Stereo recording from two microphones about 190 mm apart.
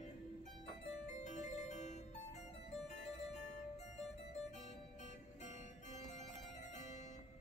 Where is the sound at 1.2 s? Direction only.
40° left (ahead or behind).